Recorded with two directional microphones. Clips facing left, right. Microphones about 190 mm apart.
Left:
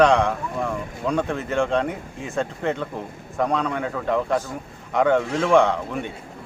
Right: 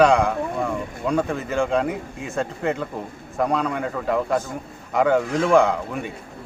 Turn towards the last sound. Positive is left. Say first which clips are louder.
# even
turn(degrees=-5)  # may be behind; listen again after turning